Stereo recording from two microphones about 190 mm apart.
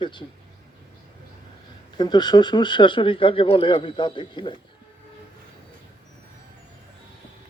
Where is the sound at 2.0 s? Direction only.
20° left (ahead or behind).